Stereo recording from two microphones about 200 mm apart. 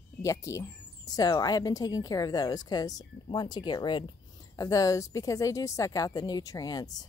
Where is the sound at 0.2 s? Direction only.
15° left (ahead or behind).